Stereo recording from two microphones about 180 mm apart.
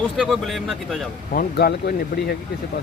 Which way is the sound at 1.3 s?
55° left (ahead or behind).